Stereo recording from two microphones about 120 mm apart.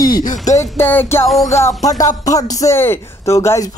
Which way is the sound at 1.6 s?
30° left (ahead or behind).